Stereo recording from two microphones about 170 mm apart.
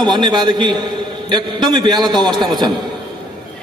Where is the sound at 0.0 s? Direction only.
25° right (ahead or behind).